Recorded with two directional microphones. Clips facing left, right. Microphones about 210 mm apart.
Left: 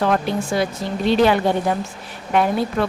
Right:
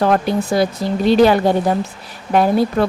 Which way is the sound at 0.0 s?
40° right (ahead or behind).